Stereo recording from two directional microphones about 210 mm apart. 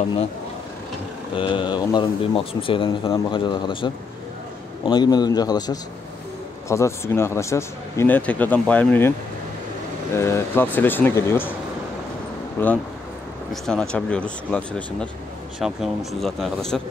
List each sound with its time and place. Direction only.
1.3 s speech: 25° left (ahead or behind); by 9.1 s 10° left (ahead or behind)
10.1 s speech: 15° left (ahead or behind)
12.6 s speech: 10° left (ahead or behind)